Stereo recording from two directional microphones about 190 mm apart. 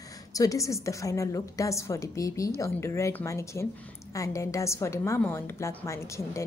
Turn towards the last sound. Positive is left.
turn(degrees=15)  # may be behind; listen again after turning